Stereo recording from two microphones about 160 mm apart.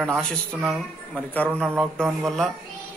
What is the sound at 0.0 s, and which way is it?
A man's voice, centre (ahead or behind).